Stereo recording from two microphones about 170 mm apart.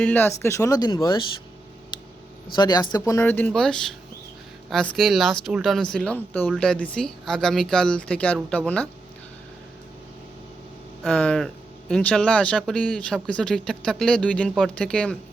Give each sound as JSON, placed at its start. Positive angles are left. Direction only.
{"t": 0.0, "sound": "speech", "side_deg": 10}
{"t": 2.6, "sound": "speech", "side_deg": 25}
{"t": 3.0, "sound": "speech", "side_deg": 15}
{"t": 11.0, "sound": "speech", "side_deg": 5}